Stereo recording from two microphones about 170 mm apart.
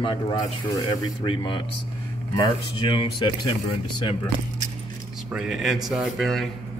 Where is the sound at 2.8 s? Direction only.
30° left (ahead or behind).